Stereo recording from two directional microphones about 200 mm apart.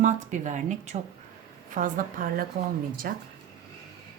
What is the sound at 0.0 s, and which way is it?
A woman's voice, 35° right (ahead or behind).